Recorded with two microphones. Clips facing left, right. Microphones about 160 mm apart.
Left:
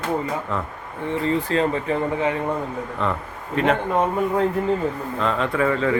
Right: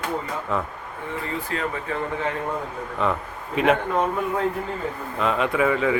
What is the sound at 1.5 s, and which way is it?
Speech, 25° left (ahead or behind).